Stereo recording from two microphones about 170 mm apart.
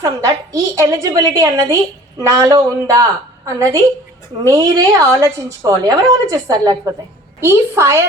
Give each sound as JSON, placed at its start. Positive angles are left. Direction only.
{"t": 0.0, "sound": "a woman's voice", "side_deg": -20}